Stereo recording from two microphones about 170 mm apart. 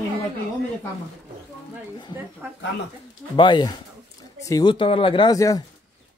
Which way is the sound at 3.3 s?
25° left (ahead or behind).